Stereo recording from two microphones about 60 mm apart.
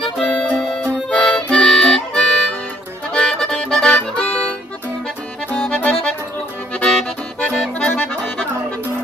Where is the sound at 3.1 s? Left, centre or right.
Centre.